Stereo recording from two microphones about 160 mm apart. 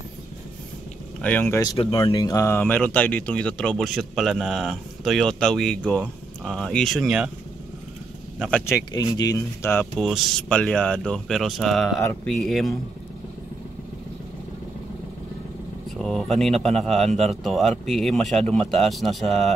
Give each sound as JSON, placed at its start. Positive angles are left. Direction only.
{"t": 1.2, "sound": "speech", "side_deg": 10}
{"t": 1.8, "sound": "speech", "side_deg": 35}
{"t": 8.4, "sound": "speech", "side_deg": 10}
{"t": 8.9, "sound": "speech", "side_deg": 25}
{"t": 9.9, "sound": "speech", "side_deg": 0}
{"t": 16.0, "sound": "speech", "side_deg": 0}